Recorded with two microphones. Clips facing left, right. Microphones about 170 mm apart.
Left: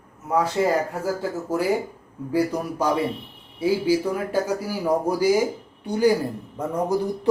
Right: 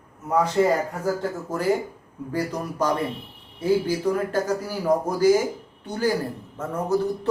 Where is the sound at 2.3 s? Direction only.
10° left (ahead or behind).